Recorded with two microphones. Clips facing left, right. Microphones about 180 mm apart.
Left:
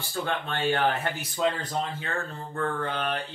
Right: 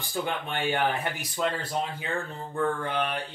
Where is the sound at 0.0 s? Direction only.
15° right (ahead or behind).